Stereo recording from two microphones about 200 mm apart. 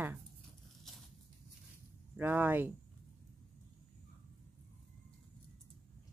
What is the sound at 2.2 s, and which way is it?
Speech, 10° right (ahead or behind).